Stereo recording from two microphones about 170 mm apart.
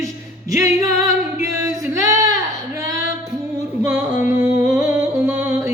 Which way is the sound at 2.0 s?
20° right (ahead or behind).